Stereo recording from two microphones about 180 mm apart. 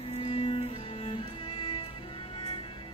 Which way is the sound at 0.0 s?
35° left (ahead or behind).